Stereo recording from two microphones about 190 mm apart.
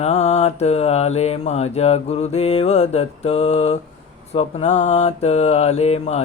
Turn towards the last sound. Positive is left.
turn(degrees=35)  # may be behind; listen again after turning